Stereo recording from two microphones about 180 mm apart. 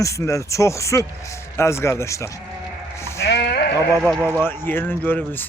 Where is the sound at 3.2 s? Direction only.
65° left (ahead or behind).